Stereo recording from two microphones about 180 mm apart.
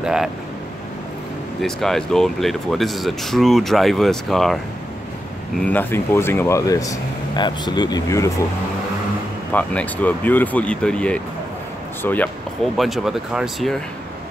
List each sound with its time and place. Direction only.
0.0 s speech: 5° right (ahead or behind)
1.6 s speech: centre (ahead or behind)
5.6 s speech: 10° left (ahead or behind)
9.5 s speech: 10° left (ahead or behind)
12.7 s speech: centre (ahead or behind)